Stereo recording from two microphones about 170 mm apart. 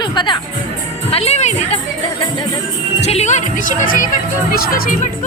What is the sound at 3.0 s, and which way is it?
Speech, 40° left (ahead or behind).